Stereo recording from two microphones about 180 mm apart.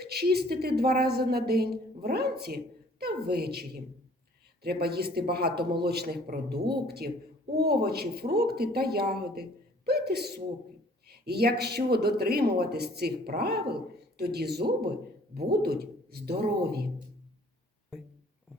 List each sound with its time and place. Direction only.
0.0 s a woman's voice: 60° right (ahead or behind)